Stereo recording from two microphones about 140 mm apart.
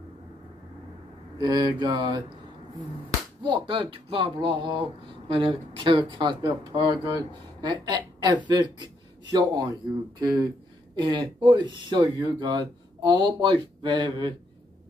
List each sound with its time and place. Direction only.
1.4 s speech: 30° right (ahead or behind)
3.4 s speech: 35° right (ahead or behind)